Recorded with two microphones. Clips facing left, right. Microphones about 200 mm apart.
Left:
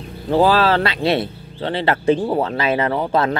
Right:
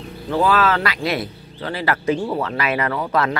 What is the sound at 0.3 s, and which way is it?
Speech, 30° left (ahead or behind).